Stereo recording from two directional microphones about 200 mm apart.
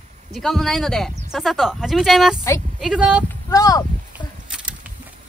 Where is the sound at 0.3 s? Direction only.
Centre (ahead or behind).